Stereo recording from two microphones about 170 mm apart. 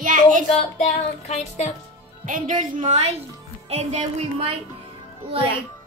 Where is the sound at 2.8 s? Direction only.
35° right (ahead or behind).